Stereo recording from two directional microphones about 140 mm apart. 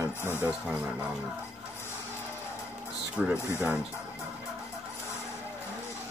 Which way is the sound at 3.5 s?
15° right (ahead or behind).